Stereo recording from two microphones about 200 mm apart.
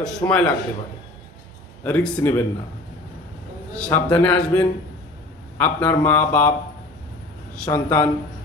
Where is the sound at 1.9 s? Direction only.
10° left (ahead or behind).